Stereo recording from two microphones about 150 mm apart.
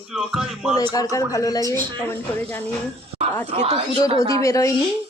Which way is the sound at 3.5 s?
45° right (ahead or behind).